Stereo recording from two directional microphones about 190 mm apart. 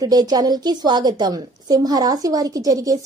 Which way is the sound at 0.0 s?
20° right (ahead or behind).